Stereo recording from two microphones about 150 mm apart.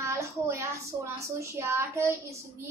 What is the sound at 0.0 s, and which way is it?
A woman's voice, 20° right (ahead or behind).